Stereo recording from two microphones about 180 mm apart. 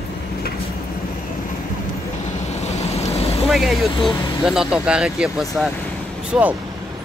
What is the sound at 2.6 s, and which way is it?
Vehicle, 35° left (ahead or behind).